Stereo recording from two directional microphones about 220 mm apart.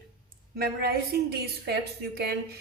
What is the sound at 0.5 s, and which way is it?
A woman's voice, 45° right (ahead or behind).